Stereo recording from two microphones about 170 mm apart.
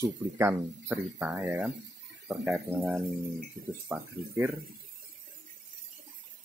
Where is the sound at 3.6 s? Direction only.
50° right (ahead or behind).